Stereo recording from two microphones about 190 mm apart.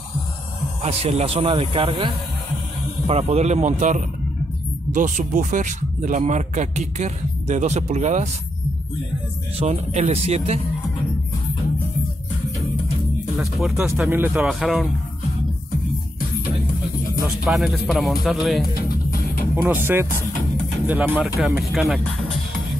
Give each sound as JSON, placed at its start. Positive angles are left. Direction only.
{"t": 0.8, "sound": "speech", "side_deg": -35}
{"t": 9.6, "sound": "speech", "side_deg": -35}
{"t": 13.4, "sound": "speech", "side_deg": 0}
{"t": 17.5, "sound": "speech", "side_deg": 0}
{"t": 18.8, "sound": "music", "side_deg": 50}
{"t": 19.5, "sound": "speech", "side_deg": -10}